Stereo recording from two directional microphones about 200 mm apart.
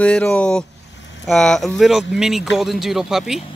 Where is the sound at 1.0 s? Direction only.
65° left (ahead or behind).